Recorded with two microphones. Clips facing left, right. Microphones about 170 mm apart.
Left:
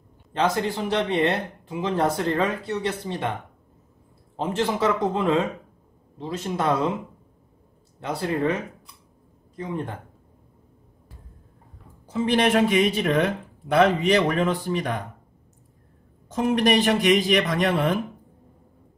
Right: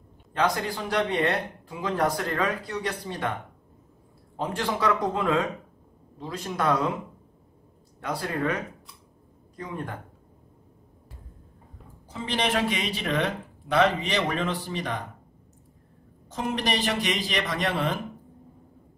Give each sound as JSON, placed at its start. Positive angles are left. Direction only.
{"t": 0.3, "sound": "speech", "side_deg": 25}
{"t": 4.4, "sound": "speech", "side_deg": 25}
{"t": 8.0, "sound": "speech", "side_deg": 25}
{"t": 9.6, "sound": "speech", "side_deg": 25}
{"t": 12.1, "sound": "speech", "side_deg": 55}
{"t": 16.3, "sound": "a man's voice", "side_deg": 55}